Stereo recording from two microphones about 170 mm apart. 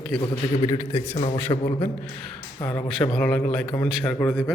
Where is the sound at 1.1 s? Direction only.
35° left (ahead or behind).